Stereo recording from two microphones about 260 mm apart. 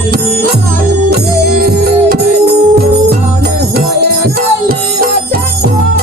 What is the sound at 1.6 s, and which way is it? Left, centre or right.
Music, right.